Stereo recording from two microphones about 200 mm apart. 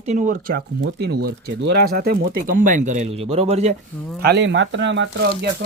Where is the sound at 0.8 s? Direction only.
60° right (ahead or behind); by 3.8 s 30° right (ahead or behind).